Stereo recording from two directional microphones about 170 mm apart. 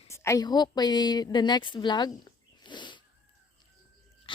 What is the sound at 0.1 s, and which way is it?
A woman's voice, 15° left (ahead or behind).